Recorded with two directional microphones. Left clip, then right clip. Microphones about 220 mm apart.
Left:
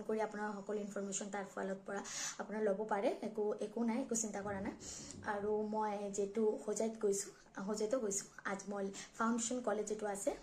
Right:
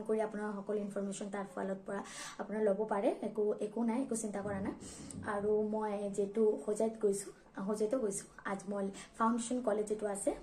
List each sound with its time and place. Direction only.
0.1 s a woman's voice: centre (ahead or behind)